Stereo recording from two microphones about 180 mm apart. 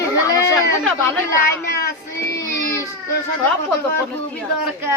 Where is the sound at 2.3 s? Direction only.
15° left (ahead or behind).